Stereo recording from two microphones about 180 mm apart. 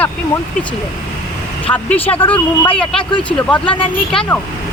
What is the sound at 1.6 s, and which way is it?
Speech, 10° left (ahead or behind).